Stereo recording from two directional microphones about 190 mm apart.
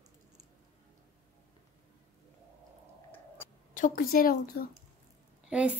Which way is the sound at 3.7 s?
45° left (ahead or behind).